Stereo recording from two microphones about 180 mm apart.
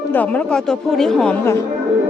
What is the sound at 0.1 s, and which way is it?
Speech, 10° left (ahead or behind).